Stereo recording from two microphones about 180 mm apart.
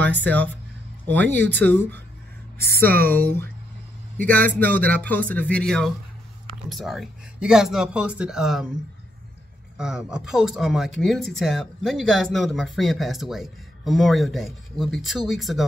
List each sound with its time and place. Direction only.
0.0 s speech: 10° left (ahead or behind)
1.2 s speech: 70° right (ahead or behind)
1.6 s speech: 10° left (ahead or behind)
2.6 s speech: 60° right (ahead or behind)
4.3 s speech: 10° left (ahead or behind)
9.8 s speech: 5° right (ahead or behind)